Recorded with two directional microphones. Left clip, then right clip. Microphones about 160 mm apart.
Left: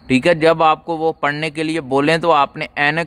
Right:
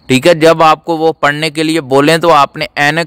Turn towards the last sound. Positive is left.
turn(degrees=-35)  # may be behind; listen again after turning